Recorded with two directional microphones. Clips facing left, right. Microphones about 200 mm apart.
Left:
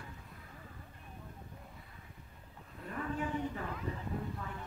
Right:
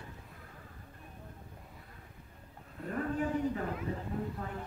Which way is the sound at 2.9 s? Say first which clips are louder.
Right 4 dB; 45° right (ahead or behind).